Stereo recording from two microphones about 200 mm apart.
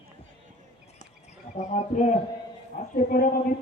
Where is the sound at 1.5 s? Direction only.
35° left (ahead or behind).